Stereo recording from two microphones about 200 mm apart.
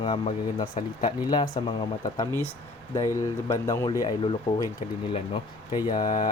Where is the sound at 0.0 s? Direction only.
25° left (ahead or behind).